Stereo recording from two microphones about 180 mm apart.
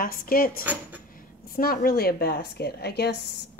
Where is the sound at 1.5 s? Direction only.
55° left (ahead or behind).